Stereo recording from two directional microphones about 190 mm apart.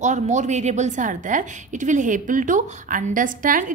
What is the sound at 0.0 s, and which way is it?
A woman's voice, 40° right (ahead or behind).